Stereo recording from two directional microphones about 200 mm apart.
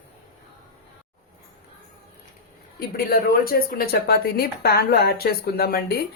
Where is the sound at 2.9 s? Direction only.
50° left (ahead or behind).